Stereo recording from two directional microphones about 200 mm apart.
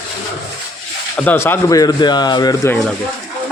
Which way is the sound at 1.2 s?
10° left (ahead or behind).